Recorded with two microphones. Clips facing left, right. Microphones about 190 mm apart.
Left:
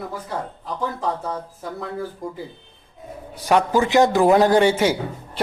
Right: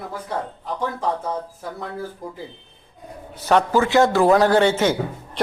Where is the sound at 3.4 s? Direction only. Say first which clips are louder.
Even; 10° left (ahead or behind).